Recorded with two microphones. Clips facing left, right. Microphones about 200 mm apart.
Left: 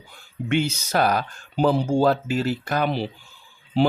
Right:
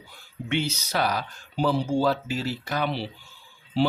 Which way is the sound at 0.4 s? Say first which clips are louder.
Left 4 dB; 50° left (ahead or behind).